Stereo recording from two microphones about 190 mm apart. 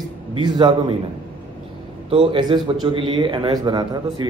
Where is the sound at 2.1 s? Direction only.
25° right (ahead or behind).